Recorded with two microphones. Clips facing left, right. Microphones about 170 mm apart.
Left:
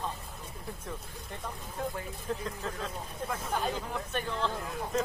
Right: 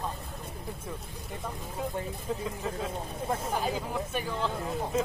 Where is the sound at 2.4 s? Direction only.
10° right (ahead or behind).